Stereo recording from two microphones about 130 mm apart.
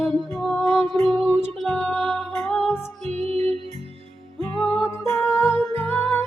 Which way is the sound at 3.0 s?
55° right (ahead or behind).